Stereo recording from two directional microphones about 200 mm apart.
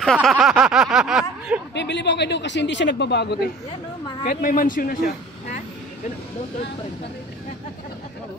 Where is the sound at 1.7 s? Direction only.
60° left (ahead or behind).